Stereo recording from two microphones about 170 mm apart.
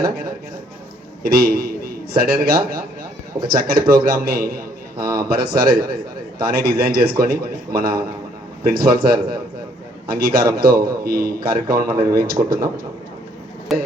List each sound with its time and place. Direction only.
1.2 s a man's voice: 60° right (ahead or behind)
13.7 s speech: centre (ahead or behind)